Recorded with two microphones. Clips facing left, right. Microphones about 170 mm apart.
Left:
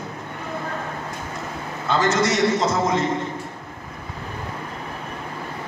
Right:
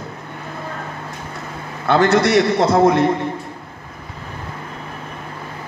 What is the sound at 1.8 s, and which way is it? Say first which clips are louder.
A man's voice: right 6 dB; 60° right (ahead or behind).